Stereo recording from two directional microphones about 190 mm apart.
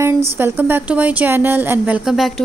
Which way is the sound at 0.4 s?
10° right (ahead or behind).